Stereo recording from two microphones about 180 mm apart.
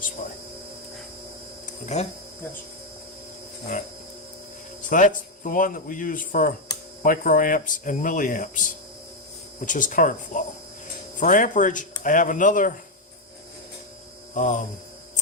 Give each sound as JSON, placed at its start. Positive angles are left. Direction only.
{"t": 1.6, "sound": "a sound", "side_deg": 40}
{"t": 4.8, "sound": "a man's voice", "side_deg": 45}
{"t": 14.3, "sound": "a man's voice", "side_deg": 45}